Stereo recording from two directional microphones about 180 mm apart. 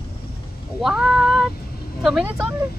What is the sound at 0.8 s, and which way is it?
Speech, centre (ahead or behind).